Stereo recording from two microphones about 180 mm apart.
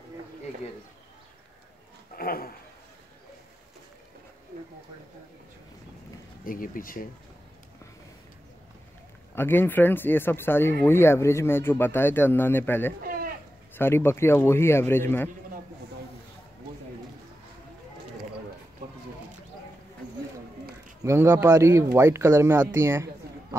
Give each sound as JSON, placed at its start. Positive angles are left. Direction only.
{"t": 2.1, "sound": "speech", "side_deg": 55}
{"t": 6.4, "sound": "speech", "side_deg": 50}
{"t": 9.3, "sound": "speech", "side_deg": 10}
{"t": 13.0, "sound": "sheep", "side_deg": -55}
{"t": 13.7, "sound": "speech", "side_deg": 15}
{"t": 21.0, "sound": "speech", "side_deg": -15}